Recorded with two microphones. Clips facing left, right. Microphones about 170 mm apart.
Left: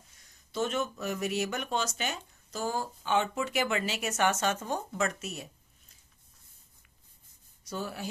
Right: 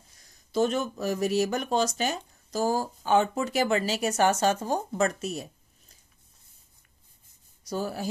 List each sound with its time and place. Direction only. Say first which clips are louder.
0.1 s speech: right 9 dB; 35° right (ahead or behind)
7.6 s speech: right 6 dB; 40° right (ahead or behind)